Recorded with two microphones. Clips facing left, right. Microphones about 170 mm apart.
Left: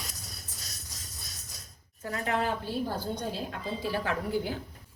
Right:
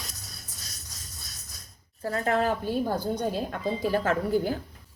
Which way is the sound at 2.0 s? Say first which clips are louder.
Right 5 dB; 40° right (ahead or behind).